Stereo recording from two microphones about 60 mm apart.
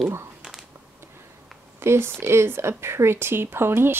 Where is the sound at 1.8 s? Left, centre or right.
Right.